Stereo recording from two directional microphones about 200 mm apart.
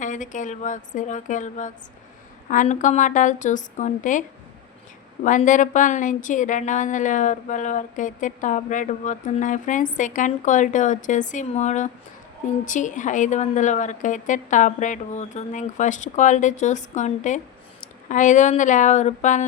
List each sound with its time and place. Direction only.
0.0 s a woman's voice: 40° left (ahead or behind)
5.2 s a woman's voice: 40° left (ahead or behind)